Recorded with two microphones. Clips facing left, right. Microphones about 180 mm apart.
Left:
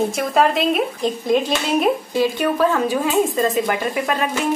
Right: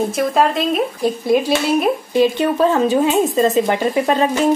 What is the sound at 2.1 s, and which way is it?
A woman's voice, 20° right (ahead or behind).